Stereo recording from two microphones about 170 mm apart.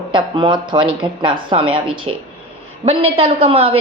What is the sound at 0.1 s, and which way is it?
Speech, 30° right (ahead or behind).